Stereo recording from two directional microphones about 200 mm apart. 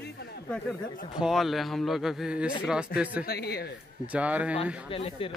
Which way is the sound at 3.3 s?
50° left (ahead or behind).